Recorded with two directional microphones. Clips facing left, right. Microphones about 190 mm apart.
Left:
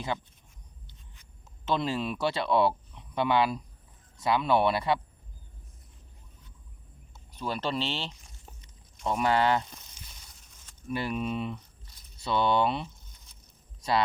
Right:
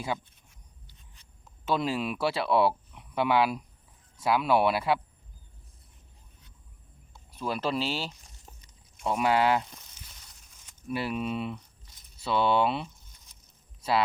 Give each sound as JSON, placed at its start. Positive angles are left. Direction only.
{"t": 1.6, "sound": "speech", "side_deg": -5}
{"t": 7.3, "sound": "speech", "side_deg": -5}
{"t": 10.8, "sound": "speech", "side_deg": -5}